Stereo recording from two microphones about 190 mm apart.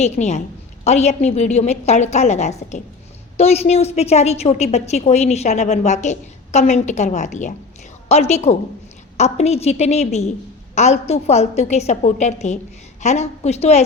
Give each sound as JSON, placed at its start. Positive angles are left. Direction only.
{"t": 0.0, "sound": "a woman's voice", "side_deg": 35}